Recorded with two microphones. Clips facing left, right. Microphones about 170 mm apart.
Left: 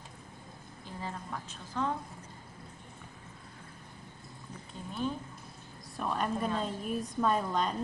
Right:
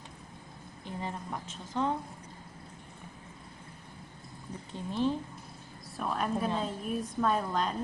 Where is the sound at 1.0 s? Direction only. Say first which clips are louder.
Right 1 dB; 20° right (ahead or behind).